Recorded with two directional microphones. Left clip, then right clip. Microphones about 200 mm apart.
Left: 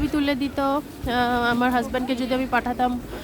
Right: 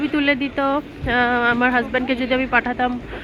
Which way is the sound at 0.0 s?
10° left (ahead or behind).